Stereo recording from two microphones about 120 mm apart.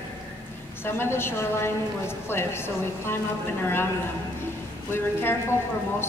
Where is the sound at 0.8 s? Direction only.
20° left (ahead or behind).